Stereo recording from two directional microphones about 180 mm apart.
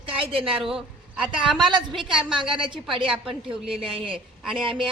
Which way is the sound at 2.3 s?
25° right (ahead or behind).